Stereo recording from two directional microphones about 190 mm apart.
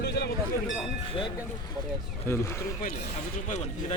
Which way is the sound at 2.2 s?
15° left (ahead or behind).